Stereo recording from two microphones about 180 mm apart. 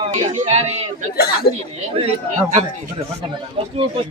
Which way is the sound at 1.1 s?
60° left (ahead or behind).